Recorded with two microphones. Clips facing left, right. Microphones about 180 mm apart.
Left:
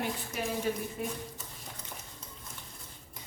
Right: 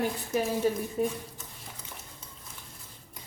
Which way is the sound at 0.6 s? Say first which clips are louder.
Right 4 dB; 40° right (ahead or behind).